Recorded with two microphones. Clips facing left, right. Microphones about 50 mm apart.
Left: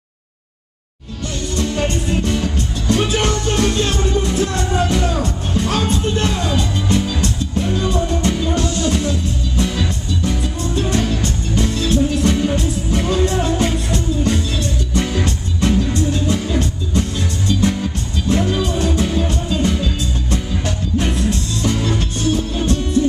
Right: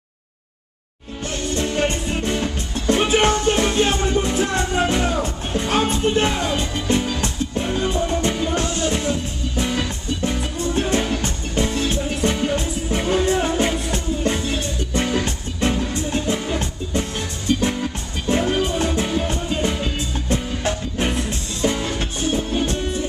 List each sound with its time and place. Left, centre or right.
1.5 s music: right
10.7 s music: right; by 13.9 s centre
13.9 s music: right
16.1 s music: right